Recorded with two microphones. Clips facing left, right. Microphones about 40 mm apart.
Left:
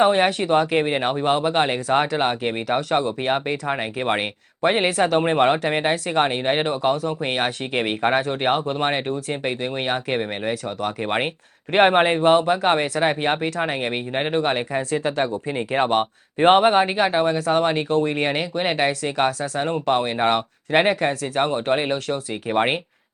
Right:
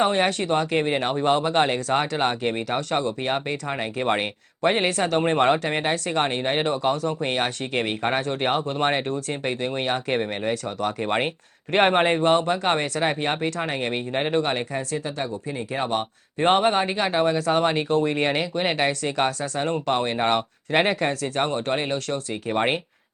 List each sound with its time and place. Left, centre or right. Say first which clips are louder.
0.0 s speech: left 4 dB; centre
14.8 s speech: left 5 dB; left
15.0 s speech: left 6 dB; left
16.4 s speech: left 5 dB; left
17.1 s speech: left 1 dB; centre